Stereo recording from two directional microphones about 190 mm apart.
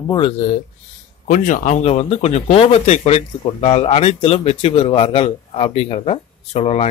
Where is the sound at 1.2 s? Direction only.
45° left (ahead or behind).